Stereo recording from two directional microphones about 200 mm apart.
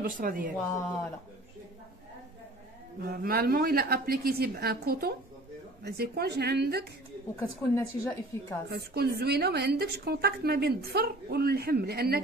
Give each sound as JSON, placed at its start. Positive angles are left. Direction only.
{"t": 0.0, "sound": "a woman's voice", "side_deg": -45}
{"t": 3.2, "sound": "a woman's voice", "side_deg": -50}
{"t": 7.3, "sound": "a woman's voice", "side_deg": 15}
{"t": 8.6, "sound": "a woman's voice", "side_deg": -55}